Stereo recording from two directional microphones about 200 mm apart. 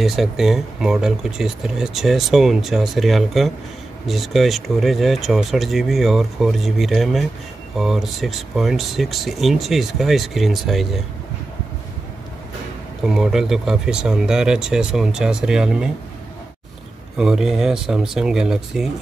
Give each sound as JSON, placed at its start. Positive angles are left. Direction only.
{"t": 0.0, "sound": "speech", "side_deg": 0}
{"t": 13.0, "sound": "speech", "side_deg": -5}
{"t": 17.2, "sound": "speech", "side_deg": 0}